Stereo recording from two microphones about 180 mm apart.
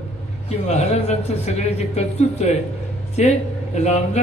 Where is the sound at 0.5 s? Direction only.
35° left (ahead or behind).